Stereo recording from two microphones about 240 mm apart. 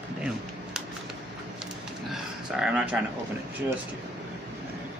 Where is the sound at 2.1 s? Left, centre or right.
Centre.